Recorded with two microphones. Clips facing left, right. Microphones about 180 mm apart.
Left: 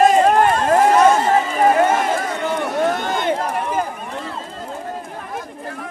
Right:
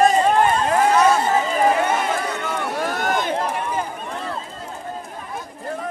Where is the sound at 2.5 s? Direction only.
25° left (ahead or behind).